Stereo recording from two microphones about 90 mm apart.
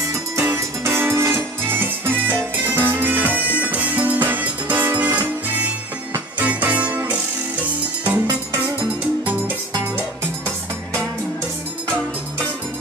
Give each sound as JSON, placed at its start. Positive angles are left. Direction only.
{"t": 0.4, "sound": "music", "side_deg": -30}